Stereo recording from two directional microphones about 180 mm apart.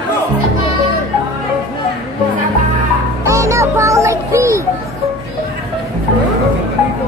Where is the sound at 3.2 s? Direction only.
15° right (ahead or behind).